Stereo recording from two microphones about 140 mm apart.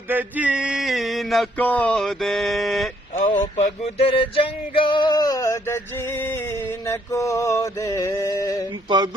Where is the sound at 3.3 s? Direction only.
55° left (ahead or behind); by 6.6 s 15° left (ahead or behind).